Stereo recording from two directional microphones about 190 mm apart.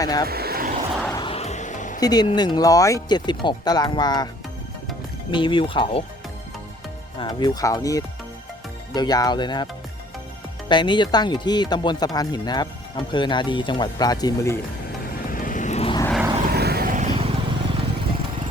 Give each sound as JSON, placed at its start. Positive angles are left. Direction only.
{"t": 0.0, "sound": "speech", "side_deg": 20}
{"t": 0.3, "sound": "a sound", "side_deg": -55}
{"t": 1.1, "sound": "music", "side_deg": 25}
{"t": 2.0, "sound": "speech", "side_deg": 20}
{"t": 5.3, "sound": "speech", "side_deg": 25}
{"t": 7.2, "sound": "speech", "side_deg": 20}
{"t": 10.7, "sound": "speech", "side_deg": 25}
{"t": 15.1, "sound": "vehicle", "side_deg": 45}
{"t": 16.5, "sound": "vehicle", "side_deg": -55}
{"t": 17.2, "sound": "vehicle", "side_deg": -30}